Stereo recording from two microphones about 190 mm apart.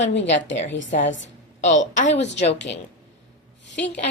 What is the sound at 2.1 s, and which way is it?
Speech, 65° left (ahead or behind).